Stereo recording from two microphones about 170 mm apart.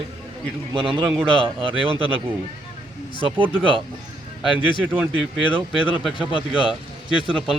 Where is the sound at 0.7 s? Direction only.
30° right (ahead or behind).